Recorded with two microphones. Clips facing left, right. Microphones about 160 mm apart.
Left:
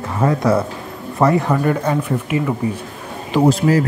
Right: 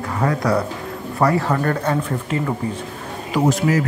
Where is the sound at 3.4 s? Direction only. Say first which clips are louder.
Left 3 dB; 30° left (ahead or behind).